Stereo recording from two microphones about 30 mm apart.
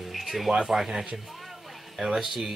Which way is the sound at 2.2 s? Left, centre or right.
Centre.